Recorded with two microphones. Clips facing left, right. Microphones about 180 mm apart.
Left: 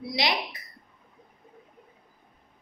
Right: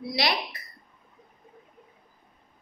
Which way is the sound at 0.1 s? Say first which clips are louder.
Even; 20° left (ahead or behind).